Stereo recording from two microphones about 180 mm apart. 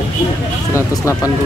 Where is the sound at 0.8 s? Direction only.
15° left (ahead or behind).